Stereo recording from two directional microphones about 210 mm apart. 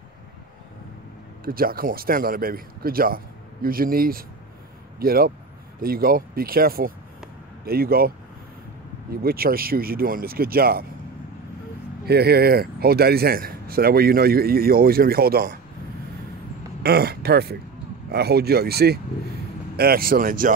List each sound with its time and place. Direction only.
1.4 s speech: 45° right (ahead or behind)
9.2 s speech: 45° right (ahead or behind)
12.1 s speech: 50° right (ahead or behind)
16.8 s speech: 45° right (ahead or behind)